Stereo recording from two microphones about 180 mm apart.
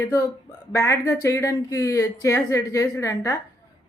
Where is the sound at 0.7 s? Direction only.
15° left (ahead or behind).